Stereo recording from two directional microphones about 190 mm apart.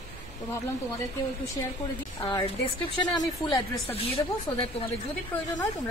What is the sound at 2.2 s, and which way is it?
Speech, 25° left (ahead or behind).